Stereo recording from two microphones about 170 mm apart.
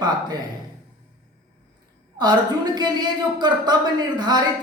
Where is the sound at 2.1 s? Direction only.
25° right (ahead or behind).